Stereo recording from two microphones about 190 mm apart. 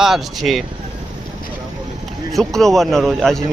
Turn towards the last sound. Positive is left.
turn(degrees=0)  # may be behind; listen again after turning